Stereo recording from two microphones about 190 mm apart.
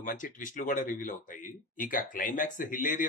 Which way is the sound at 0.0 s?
45° left (ahead or behind).